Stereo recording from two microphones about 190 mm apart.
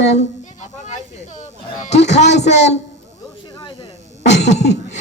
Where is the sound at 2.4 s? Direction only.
35° left (ahead or behind).